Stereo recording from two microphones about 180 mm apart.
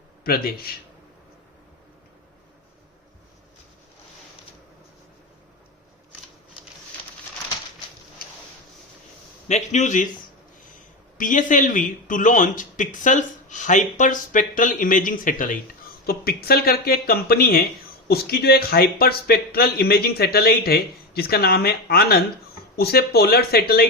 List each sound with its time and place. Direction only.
0.3 s speech: 55° left (ahead or behind)
9.5 s a man's voice: 40° left (ahead or behind)
11.2 s speech: 45° left (ahead or behind)
16.0 s speech: 60° left (ahead or behind)